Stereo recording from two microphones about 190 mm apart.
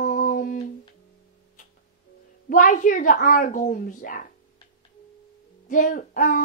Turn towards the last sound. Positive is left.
turn(degrees=45)  # may be behind; listen again after turning